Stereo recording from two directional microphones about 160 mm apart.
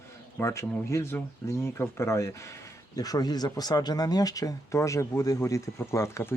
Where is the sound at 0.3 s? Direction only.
15° left (ahead or behind).